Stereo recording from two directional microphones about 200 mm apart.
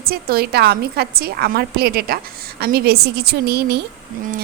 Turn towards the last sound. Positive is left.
turn(degrees=-55)  # may be behind; listen again after turning